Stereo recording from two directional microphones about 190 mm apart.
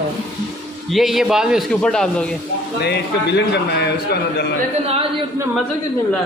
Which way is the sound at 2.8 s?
60° left (ahead or behind).